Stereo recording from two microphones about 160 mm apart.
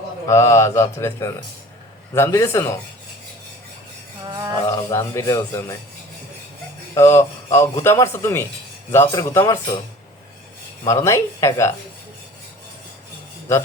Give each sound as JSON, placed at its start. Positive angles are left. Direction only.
{"t": 0.3, "sound": "speech", "side_deg": 20}
{"t": 4.7, "sound": "speech", "side_deg": 20}
{"t": 6.9, "sound": "speech", "side_deg": 15}
{"t": 10.8, "sound": "speech", "side_deg": 20}